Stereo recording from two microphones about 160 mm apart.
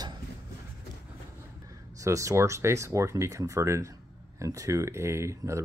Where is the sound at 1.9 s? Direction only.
20° right (ahead or behind).